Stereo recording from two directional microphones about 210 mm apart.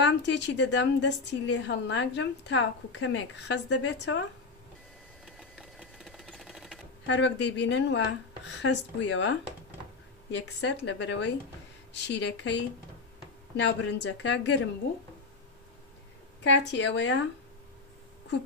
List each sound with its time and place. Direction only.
0.0 s a woman's voice: 55° left (ahead or behind)
5.2 s sewing machine: centre (ahead or behind)
7.1 s a woman's voice: 60° left (ahead or behind)
16.4 s a woman's voice: 60° left (ahead or behind)